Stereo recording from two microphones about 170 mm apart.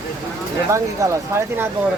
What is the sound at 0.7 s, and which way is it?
Speech, 15° right (ahead or behind).